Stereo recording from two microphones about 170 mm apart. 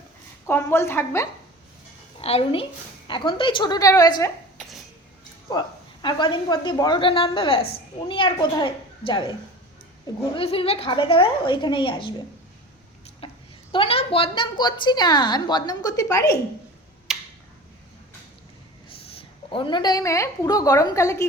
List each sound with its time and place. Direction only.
0.4 s a woman's voice: 15° left (ahead or behind)
2.2 s a woman's voice: 35° left (ahead or behind)
5.5 s a woman's voice: 25° left (ahead or behind)
10.3 s a woman's voice: 35° left (ahead or behind)
13.2 s a sound: 35° left (ahead or behind)
13.7 s a woman's voice: 35° left (ahead or behind)
17.1 s tick-tock: centre (ahead or behind)
19.1 s a woman's voice: 30° left (ahead or behind)